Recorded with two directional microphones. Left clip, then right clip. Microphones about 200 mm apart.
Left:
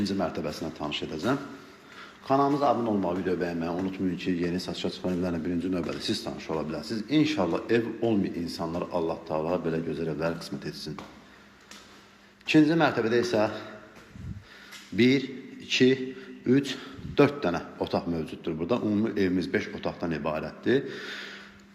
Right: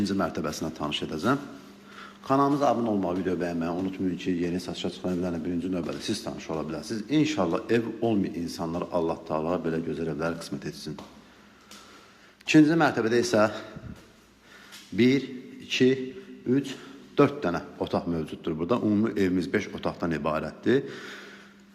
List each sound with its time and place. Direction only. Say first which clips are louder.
0.0 s a man's voice: right 1 dB; 15° right (ahead or behind)
12.5 s a man's voice: right 2 dB; 15° right (ahead or behind)
14.9 s a man's voice: even; 10° right (ahead or behind)
16.5 s a man's voice: left 2 dB; 15° left (ahead or behind)
17.2 s a man's voice: even; 10° right (ahead or behind)